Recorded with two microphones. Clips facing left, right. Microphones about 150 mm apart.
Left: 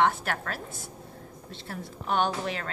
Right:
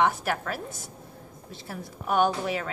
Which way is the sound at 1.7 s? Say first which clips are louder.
Right 2 dB; 10° right (ahead or behind).